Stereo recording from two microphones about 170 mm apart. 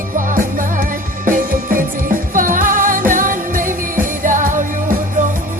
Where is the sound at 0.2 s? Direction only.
50° right (ahead or behind).